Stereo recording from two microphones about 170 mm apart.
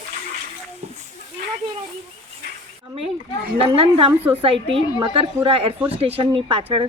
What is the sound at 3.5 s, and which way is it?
A woman's voice, 35° right (ahead or behind).